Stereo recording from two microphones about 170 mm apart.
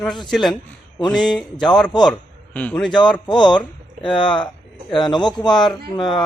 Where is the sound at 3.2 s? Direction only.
25° left (ahead or behind).